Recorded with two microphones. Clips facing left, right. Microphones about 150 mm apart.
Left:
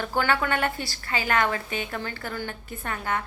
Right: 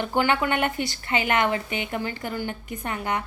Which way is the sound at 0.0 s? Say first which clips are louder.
Right 2 dB; 20° right (ahead or behind).